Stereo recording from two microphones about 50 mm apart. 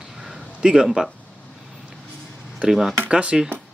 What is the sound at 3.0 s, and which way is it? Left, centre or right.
Speech, right.